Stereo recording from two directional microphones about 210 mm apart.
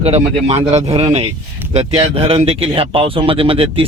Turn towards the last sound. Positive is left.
turn(degrees=-25)  # may be behind; listen again after turning